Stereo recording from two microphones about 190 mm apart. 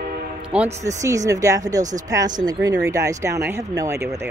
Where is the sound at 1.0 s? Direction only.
15° right (ahead or behind).